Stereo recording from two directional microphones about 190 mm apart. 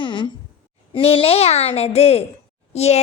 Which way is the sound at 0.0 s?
25° left (ahead or behind).